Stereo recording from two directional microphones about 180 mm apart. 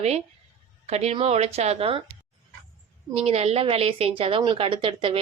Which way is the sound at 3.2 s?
35° right (ahead or behind).